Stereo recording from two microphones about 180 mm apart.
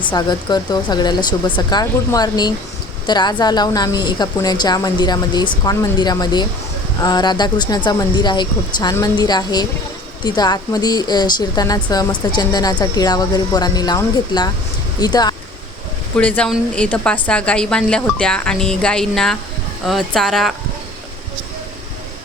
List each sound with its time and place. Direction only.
0.0 s speech: 25° left (ahead or behind)
16.1 s a woman's voice: 5° left (ahead or behind)